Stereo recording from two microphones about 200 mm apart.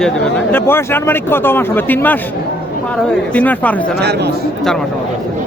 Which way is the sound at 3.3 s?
10° left (ahead or behind).